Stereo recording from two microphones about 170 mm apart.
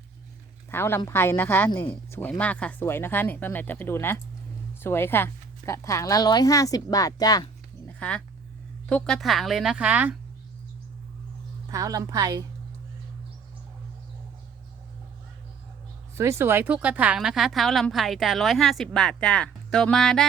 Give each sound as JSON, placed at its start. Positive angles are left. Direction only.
{"t": 0.7, "sound": "a woman's voice", "side_deg": 15}
{"t": 7.9, "sound": "a sound", "side_deg": 5}
{"t": 8.9, "sound": "speech", "side_deg": 5}
{"t": 11.7, "sound": "a woman's voice", "side_deg": -20}
{"t": 16.1, "sound": "speech", "side_deg": -15}